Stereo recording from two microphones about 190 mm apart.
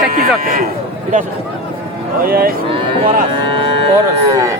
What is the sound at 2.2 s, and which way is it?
Speech, 50° right (ahead or behind).